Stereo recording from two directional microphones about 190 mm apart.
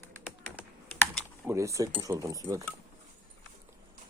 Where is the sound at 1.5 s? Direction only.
15° right (ahead or behind).